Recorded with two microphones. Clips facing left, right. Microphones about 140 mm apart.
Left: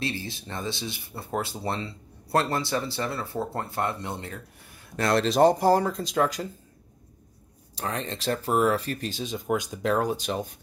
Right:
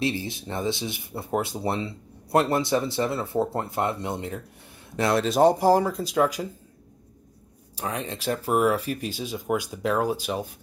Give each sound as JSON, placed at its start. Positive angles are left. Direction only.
{"t": 0.0, "sound": "speech", "side_deg": -20}
{"t": 7.7, "sound": "speech", "side_deg": -10}